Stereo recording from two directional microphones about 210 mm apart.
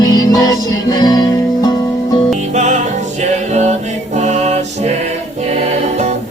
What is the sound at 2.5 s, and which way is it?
Music, 35° right (ahead or behind).